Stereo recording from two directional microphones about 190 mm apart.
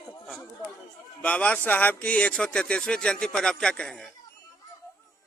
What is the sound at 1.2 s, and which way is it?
A man's voice, 5° left (ahead or behind).